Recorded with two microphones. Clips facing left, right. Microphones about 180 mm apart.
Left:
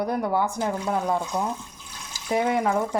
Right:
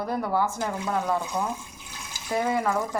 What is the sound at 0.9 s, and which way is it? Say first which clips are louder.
A woman's voice: right 1 dB; 30° left (ahead or behind).